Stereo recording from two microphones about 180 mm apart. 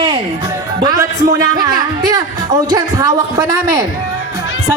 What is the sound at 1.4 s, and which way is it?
Music, 20° right (ahead or behind).